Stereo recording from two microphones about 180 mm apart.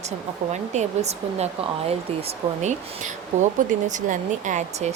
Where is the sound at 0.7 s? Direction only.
35° right (ahead or behind).